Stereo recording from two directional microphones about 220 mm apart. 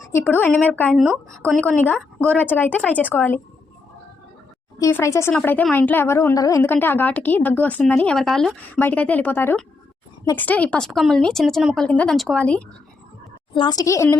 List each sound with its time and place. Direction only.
0.1 s a woman's voice: 10° left (ahead or behind)
4.8 s a woman's voice: 10° left (ahead or behind)
13.5 s a woman's voice: 20° left (ahead or behind)